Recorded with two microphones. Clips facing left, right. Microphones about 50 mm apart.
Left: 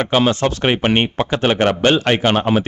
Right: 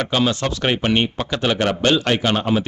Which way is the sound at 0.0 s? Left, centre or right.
Left.